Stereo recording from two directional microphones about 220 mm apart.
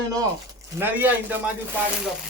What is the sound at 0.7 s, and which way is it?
Speech, 10° right (ahead or behind).